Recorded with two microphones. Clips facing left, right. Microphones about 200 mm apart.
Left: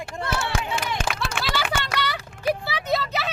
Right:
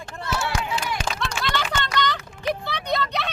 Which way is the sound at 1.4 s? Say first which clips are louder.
Right 1 dB; 10° left (ahead or behind).